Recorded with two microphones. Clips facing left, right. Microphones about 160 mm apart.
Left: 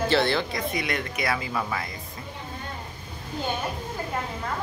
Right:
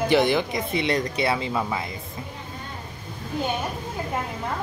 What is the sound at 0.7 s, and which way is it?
Speech, 30° right (ahead or behind).